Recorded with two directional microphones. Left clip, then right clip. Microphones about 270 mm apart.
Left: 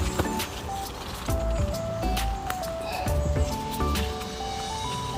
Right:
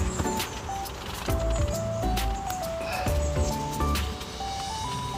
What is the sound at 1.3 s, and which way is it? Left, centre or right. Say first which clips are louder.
Music: right 1 dB; centre.